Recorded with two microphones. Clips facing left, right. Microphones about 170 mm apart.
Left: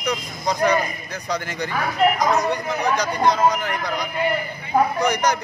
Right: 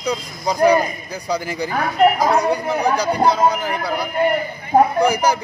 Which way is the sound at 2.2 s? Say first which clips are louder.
Right 3 dB; 30° right (ahead or behind).